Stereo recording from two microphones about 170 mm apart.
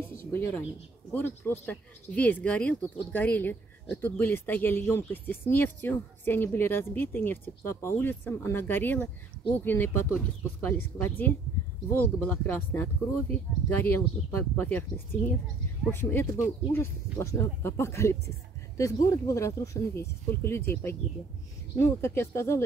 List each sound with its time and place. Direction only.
0.0 s a sound: 15° left (ahead or behind)
1.1 s speech: 10° left (ahead or behind)
15.9 s speech: 15° left (ahead or behind)